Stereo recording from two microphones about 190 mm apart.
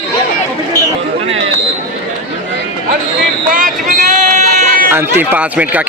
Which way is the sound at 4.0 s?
40° right (ahead or behind).